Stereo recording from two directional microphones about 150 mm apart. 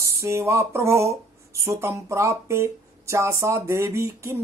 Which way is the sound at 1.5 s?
20° right (ahead or behind).